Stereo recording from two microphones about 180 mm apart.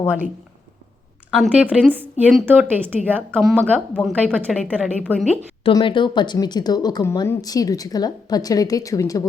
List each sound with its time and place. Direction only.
1.3 s a woman's voice: 5° right (ahead or behind)
3.7 s a woman's voice: 5° left (ahead or behind)
5.6 s speech: 25° left (ahead or behind)